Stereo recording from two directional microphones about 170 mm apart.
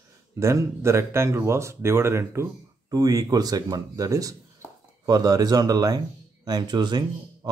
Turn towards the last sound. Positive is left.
turn(degrees=-25)  # may be behind; listen again after turning